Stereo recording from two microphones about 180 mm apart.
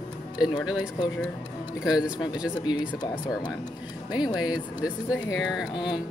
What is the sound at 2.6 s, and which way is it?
Speech, 25° left (ahead or behind).